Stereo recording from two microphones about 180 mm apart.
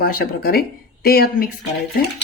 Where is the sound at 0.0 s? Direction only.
55° left (ahead or behind).